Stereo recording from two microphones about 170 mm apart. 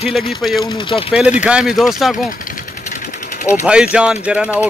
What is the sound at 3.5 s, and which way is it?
Speech, 5° right (ahead or behind).